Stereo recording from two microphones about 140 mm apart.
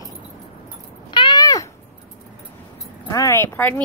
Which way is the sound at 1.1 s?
35° left (ahead or behind).